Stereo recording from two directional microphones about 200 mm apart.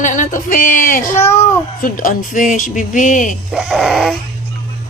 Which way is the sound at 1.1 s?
15° left (ahead or behind).